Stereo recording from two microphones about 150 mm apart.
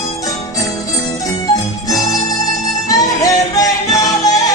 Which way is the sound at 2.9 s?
25° left (ahead or behind).